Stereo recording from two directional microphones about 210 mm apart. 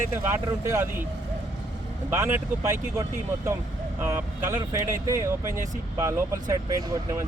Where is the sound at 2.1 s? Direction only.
10° right (ahead or behind).